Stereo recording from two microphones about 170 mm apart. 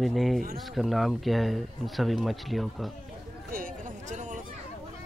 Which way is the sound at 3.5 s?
50° right (ahead or behind).